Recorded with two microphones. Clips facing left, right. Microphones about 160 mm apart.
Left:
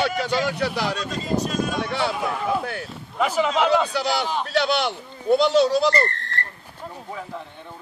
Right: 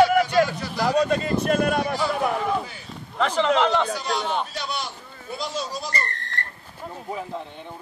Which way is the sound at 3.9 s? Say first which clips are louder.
Left 2 dB; 70° left (ahead or behind).